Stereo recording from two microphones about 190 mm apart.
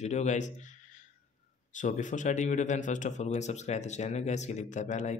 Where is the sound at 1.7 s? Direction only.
40° left (ahead or behind).